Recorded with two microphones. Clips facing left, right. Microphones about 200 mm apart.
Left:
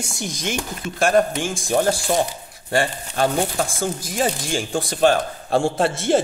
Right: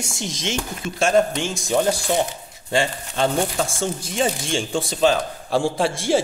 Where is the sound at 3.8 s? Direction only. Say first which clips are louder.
Even; 25° right (ahead or behind).